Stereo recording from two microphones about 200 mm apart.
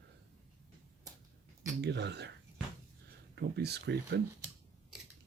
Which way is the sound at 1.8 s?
60° right (ahead or behind).